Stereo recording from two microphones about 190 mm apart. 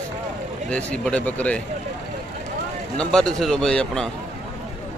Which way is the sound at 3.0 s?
5° left (ahead or behind).